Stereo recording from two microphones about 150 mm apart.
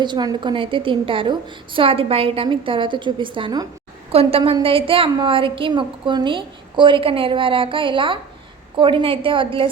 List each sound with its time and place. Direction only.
0.0 s a woman's voice: 30° right (ahead or behind)
4.1 s a woman's voice: 40° right (ahead or behind)